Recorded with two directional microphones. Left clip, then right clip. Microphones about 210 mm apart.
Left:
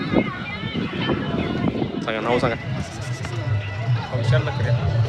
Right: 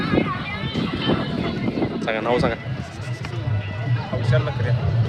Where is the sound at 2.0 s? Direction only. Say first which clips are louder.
Even; centre (ahead or behind).